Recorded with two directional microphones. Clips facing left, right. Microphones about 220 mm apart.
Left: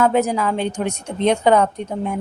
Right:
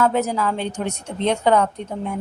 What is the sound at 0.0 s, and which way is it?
A woman's voice, 15° left (ahead or behind).